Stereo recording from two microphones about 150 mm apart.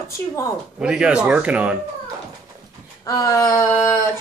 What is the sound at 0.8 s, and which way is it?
Speech, 5° right (ahead or behind).